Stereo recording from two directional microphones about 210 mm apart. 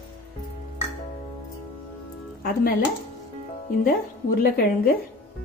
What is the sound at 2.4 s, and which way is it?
Speech, 45° left (ahead or behind).